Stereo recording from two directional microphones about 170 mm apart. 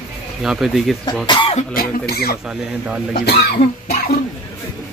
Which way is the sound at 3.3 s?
70° left (ahead or behind).